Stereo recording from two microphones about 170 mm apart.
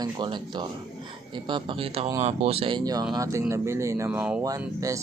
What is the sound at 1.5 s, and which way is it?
Speech, 30° right (ahead or behind).